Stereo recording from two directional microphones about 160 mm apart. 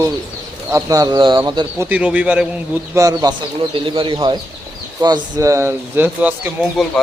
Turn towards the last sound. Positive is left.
turn(degrees=-10)  # may be behind; listen again after turning